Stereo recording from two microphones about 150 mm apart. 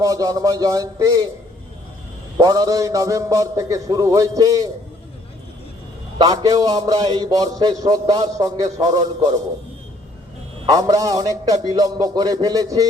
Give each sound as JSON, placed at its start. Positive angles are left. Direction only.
{"t": 0.0, "sound": "a man's voice", "side_deg": -25}
{"t": 2.4, "sound": "a man's voice", "side_deg": -25}
{"t": 6.1, "sound": "a man's voice", "side_deg": -25}
{"t": 10.7, "sound": "a man's voice", "side_deg": -25}